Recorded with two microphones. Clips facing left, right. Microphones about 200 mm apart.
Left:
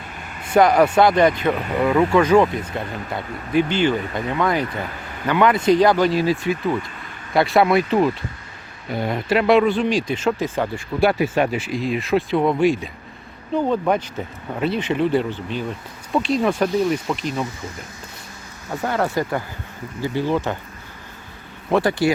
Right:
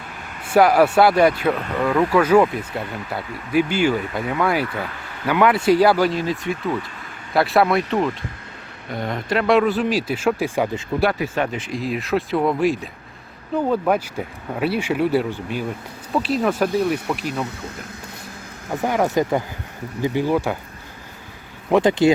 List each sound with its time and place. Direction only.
0.4 s speech: 5° right (ahead or behind)
1.5 s speech: 10° left (ahead or behind)
2.1 s speech: 5° right (ahead or behind)
6.1 s speech: 5° left (ahead or behind); by 10.7 s 10° right (ahead or behind)
11.2 s speech: 15° left (ahead or behind); by 17.3 s 5° right (ahead or behind)
17.4 s speech: 60° right (ahead or behind)
18.7 s speech: 15° right (ahead or behind)
21.7 s speech: 20° right (ahead or behind)